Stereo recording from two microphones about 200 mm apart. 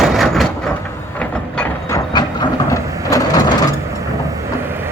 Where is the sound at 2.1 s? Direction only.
20° left (ahead or behind).